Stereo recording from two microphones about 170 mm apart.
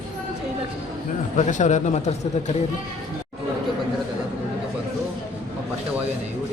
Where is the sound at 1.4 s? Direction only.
45° left (ahead or behind).